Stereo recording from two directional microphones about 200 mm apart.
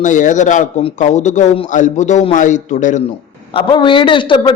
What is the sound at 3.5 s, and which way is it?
A man's voice, 25° left (ahead or behind).